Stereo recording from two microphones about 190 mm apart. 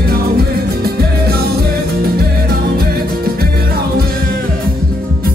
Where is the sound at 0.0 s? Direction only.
55° right (ahead or behind).